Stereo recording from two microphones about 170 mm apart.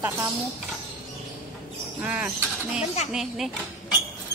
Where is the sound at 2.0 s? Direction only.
10° right (ahead or behind).